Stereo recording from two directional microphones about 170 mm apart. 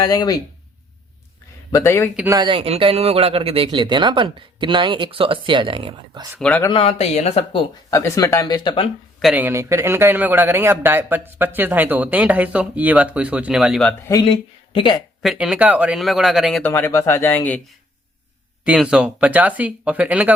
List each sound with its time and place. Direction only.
0.0 s speech: 20° left (ahead or behind)
1.7 s speech: 15° left (ahead or behind)
2.1 s a man's voice: 10° right (ahead or behind)
2.4 s speech: 30° right (ahead or behind)
6.7 s speech: 35° left (ahead or behind)
7.9 s speech: 20° left (ahead or behind)
9.2 s a man's voice: 10° right (ahead or behind)
14.1 s speech: 25° left (ahead or behind)
15.2 s speech: centre (ahead or behind)
16.6 s speech: 10° left (ahead or behind)
18.6 s a man's voice: 5° right (ahead or behind)